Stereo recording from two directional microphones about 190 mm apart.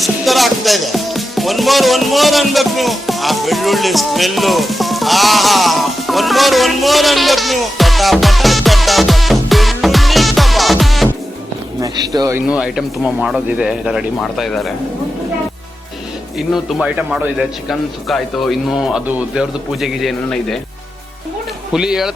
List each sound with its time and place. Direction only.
0.0 s speech: centre (ahead or behind)
11.8 s speech: 20° right (ahead or behind)
12.5 s a man's voice: 5° right (ahead or behind)
16.5 s a man's voice: centre (ahead or behind)
21.7 s a man's voice: 5° right (ahead or behind)